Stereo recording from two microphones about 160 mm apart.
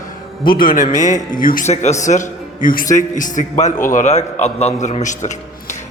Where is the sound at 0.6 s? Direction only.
60° left (ahead or behind).